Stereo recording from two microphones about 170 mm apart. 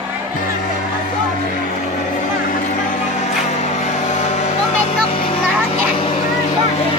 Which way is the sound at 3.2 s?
40° left (ahead or behind).